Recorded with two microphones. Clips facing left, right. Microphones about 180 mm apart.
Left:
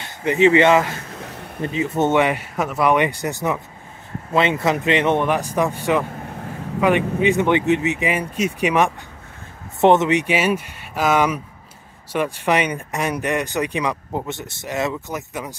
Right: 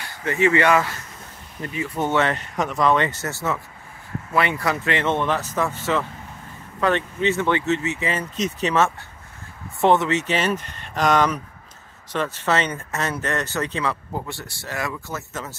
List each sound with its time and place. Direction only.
0.0 s speech: 20° left (ahead or behind)
1.1 s a sound: 70° left (ahead or behind)
1.6 s speech: 20° left (ahead or behind)
6.2 s vehicle: 65° left (ahead or behind)
6.8 s speech: 10° left (ahead or behind)